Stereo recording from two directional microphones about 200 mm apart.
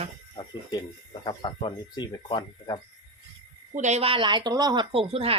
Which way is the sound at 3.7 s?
35° right (ahead or behind).